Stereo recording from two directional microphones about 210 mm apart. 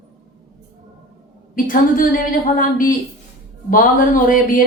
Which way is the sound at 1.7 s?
40° left (ahead or behind).